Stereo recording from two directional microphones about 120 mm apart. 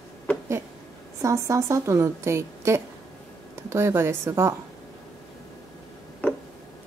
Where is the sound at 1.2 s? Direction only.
25° right (ahead or behind).